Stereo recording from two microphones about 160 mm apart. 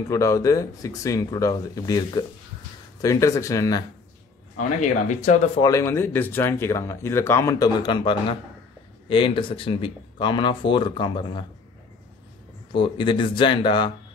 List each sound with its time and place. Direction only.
0.1 s speech: 20° left (ahead or behind)
4.6 s speech: 50° left (ahead or behind)
5.6 s speech: 20° left (ahead or behind)
12.7 s speech: 30° left (ahead or behind)